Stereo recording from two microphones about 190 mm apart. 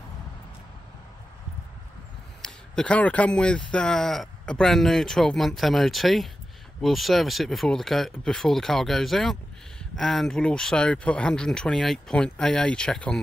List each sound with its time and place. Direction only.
2.4 s speech: 5° left (ahead or behind)